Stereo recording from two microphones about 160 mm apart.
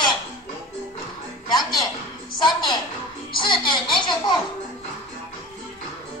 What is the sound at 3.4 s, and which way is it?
Music, 30° left (ahead or behind).